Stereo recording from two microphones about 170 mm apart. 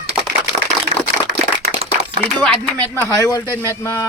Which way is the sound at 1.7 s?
35° right (ahead or behind).